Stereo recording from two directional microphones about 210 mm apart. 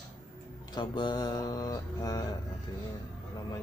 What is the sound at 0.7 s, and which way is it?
Mantra, 20° left (ahead or behind).